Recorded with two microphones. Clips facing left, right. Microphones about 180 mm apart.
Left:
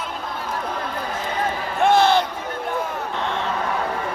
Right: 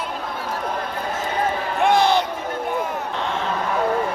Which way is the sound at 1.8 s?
15° right (ahead or behind).